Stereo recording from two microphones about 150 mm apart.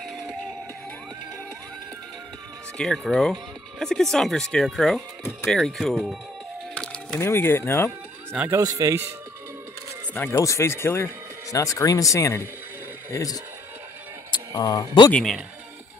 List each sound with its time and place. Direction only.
0.0 s music: centre (ahead or behind)
2.8 s speech: 5° left (ahead or behind)
6.7 s a sound: 5° left (ahead or behind)
7.2 s speech: 15° left (ahead or behind)
8.4 s speech: 20° right (ahead or behind)
10.1 s speech: 15° left (ahead or behind)
14.3 s a sound: 25° left (ahead or behind)
15.1 s speech: centre (ahead or behind)